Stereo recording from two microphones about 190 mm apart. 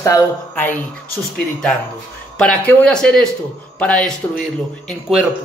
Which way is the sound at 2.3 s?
5° left (ahead or behind).